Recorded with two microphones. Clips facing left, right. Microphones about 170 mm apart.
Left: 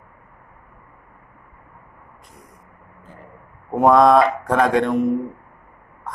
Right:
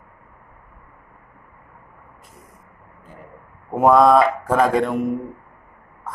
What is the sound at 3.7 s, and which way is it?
Speech, centre (ahead or behind).